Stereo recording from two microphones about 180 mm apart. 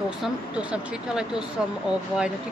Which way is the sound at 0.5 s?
5° right (ahead or behind).